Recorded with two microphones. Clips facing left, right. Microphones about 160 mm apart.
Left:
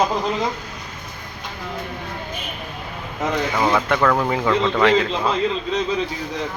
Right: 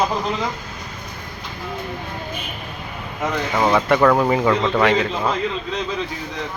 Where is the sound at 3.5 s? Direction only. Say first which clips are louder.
Right 5 dB; 10° right (ahead or behind).